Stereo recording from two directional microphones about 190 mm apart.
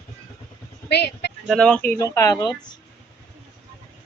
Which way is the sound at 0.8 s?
60° left (ahead or behind).